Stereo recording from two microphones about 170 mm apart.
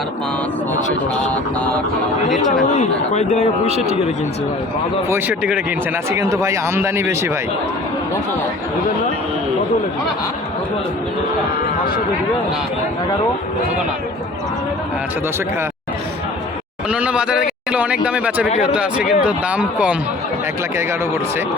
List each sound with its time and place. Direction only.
0.9 s speech: 40° left (ahead or behind)
2.7 s speech: 45° left (ahead or behind)
5.0 s speech: 10° right (ahead or behind)
6.1 s speech: 15° right (ahead or behind)
16.9 s speech: 5° right (ahead or behind)